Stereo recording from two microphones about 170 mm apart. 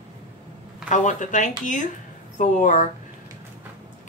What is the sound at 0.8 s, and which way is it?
Speech, 45° left (ahead or behind).